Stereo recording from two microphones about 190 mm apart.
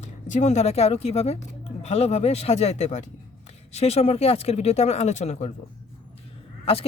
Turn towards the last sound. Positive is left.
turn(degrees=30)  # may be behind; listen again after turning